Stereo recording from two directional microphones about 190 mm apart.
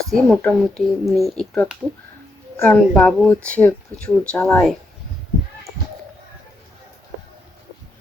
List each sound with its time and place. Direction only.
0.1 s speech: 5° left (ahead or behind)